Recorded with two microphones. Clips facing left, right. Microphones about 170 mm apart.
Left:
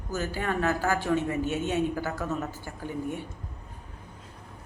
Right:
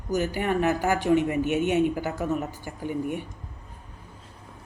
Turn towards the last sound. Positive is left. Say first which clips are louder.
# right 4 dB
turn(degrees=-15)  # may be behind; listen again after turning